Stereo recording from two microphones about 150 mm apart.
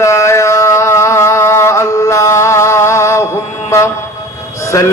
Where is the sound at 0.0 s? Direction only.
20° left (ahead or behind).